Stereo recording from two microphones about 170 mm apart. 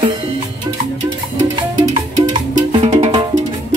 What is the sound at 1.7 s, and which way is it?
Music, 25° right (ahead or behind).